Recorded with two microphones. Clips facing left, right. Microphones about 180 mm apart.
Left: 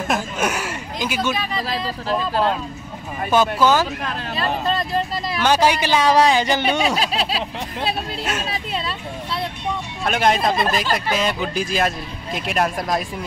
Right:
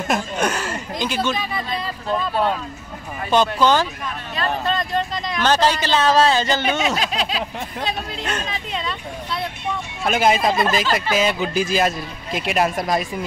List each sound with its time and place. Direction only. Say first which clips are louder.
0.1 s speech: right 1 dB; 5° left (ahead or behind)
3.3 s speech: even; 5° left (ahead or behind)
7.0 s a sound: left 1 dB; 35° left (ahead or behind)
8.2 s speech: left 1 dB; 5° left (ahead or behind)
8.5 s speech: left 1 dB; 35° left (ahead or behind)
10.0 s speech: right 1 dB; 5° right (ahead or behind)